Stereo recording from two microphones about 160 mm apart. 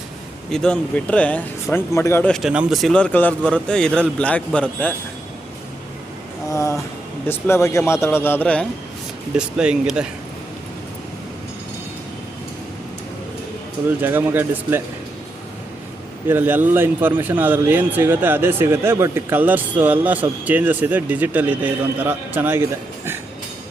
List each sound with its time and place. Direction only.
0.5 s speech: 5° left (ahead or behind)
2.3 s a man's voice: 5° right (ahead or behind)
6.5 s a sound: 20° left (ahead or behind)
7.3 s speech: 15° left (ahead or behind)
9.3 s a man's voice: 5° right (ahead or behind)
13.8 s a man's voice: 15° right (ahead or behind)
16.3 s a man's voice: 10° right (ahead or behind)